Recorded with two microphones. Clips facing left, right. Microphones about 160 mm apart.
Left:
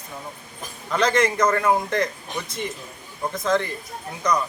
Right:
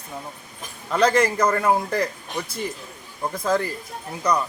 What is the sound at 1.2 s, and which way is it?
Speech, 10° right (ahead or behind).